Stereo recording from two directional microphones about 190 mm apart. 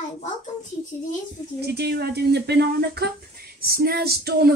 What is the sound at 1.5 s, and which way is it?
Speech, 60° right (ahead or behind).